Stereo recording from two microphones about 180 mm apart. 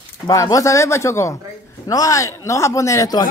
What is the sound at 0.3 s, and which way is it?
Speech, 20° left (ahead or behind).